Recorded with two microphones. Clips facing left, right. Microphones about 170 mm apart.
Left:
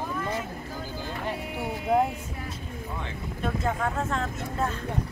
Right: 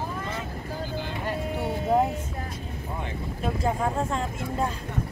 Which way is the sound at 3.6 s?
30° right (ahead or behind).